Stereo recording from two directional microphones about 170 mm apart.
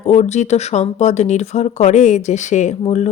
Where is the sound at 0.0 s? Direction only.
40° left (ahead or behind).